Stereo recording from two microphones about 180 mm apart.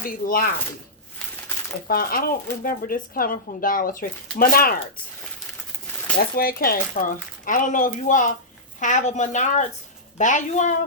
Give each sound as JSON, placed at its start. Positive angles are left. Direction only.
{"t": 0.0, "sound": "speech", "side_deg": 50}
{"t": 1.9, "sound": "speech", "side_deg": 55}
{"t": 6.3, "sound": "speech", "side_deg": 55}